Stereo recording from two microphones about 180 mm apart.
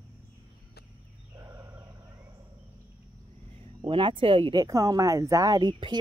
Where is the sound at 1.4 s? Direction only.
20° right (ahead or behind).